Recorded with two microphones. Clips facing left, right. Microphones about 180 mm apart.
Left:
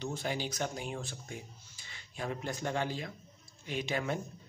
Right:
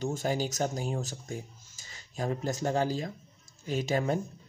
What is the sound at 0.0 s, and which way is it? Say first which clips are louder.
Speech: right 6 dB; 45° right (ahead or behind).